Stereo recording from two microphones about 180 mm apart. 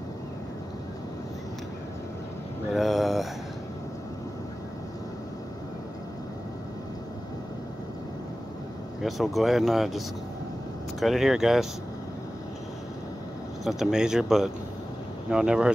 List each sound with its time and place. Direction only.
2.7 s a sound: centre (ahead or behind)
9.0 s speech: centre (ahead or behind)
13.7 s speech: centre (ahead or behind)